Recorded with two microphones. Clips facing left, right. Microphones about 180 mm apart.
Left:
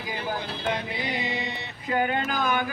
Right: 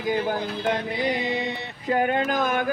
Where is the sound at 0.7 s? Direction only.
50° right (ahead or behind).